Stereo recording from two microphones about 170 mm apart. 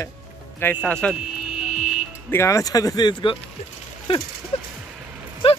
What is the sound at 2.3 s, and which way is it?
Speech, 15° left (ahead or behind).